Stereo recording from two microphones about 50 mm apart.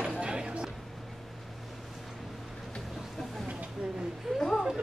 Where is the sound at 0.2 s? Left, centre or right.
Centre.